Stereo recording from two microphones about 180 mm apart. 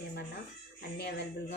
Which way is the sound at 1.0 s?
70° left (ahead or behind).